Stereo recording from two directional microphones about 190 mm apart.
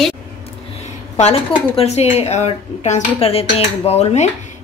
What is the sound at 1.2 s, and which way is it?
Speech, 30° left (ahead or behind).